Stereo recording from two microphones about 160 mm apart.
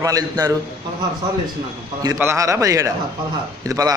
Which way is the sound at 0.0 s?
20° right (ahead or behind).